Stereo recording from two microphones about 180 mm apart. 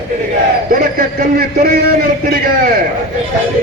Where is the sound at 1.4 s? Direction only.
55° right (ahead or behind).